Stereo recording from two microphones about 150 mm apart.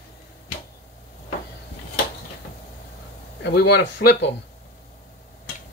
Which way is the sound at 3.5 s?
90° left.